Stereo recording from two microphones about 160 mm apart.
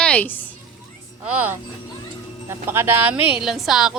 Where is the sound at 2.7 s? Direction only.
15° right (ahead or behind).